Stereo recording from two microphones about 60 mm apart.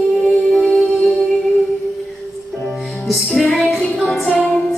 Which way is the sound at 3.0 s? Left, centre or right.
Centre.